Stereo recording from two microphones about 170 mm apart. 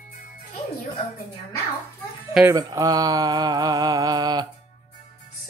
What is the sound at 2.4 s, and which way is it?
Mantra, 20° right (ahead or behind).